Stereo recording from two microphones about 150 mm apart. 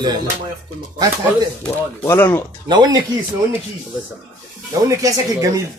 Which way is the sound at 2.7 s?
30° right (ahead or behind).